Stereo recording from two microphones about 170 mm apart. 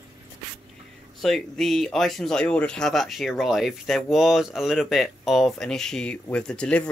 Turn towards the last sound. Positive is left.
turn(degrees=5)  # may be behind; listen again after turning